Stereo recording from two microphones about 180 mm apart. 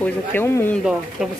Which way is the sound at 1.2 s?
5° right (ahead or behind).